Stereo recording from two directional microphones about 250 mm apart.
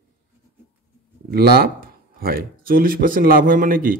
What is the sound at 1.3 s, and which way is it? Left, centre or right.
Speech, right.